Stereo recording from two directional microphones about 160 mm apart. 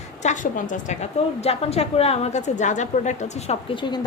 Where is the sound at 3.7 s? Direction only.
30° left (ahead or behind).